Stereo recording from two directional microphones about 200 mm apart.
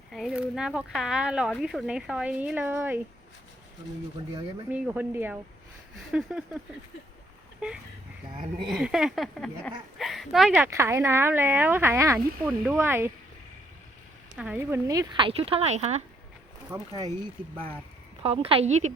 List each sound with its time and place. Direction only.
0.1 s speech: centre (ahead or behind)
4.7 s speech: 10° right (ahead or behind)
8.6 s speech: centre (ahead or behind)
10.7 s speech: 15° right (ahead or behind)
14.3 s speech: 5° right (ahead or behind); by 16.0 s 35° right (ahead or behind)
16.7 s speech: 10° right (ahead or behind)
18.2 s a woman's voice: 30° right (ahead or behind)